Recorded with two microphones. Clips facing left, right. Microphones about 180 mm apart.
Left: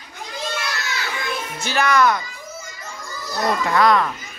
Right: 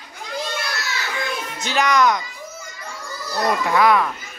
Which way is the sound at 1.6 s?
15° right (ahead or behind).